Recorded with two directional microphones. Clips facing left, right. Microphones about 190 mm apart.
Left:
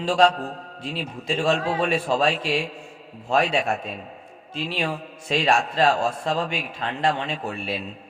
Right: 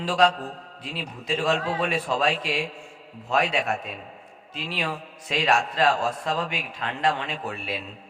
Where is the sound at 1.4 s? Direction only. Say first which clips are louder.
Left 3 dB; 30° left (ahead or behind).